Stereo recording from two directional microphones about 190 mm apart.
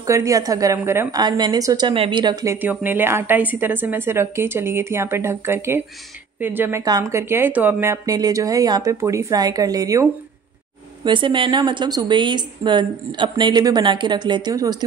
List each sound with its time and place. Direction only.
0.0 s a woman's voice: 15° right (ahead or behind)
11.1 s a woman's voice: 25° right (ahead or behind)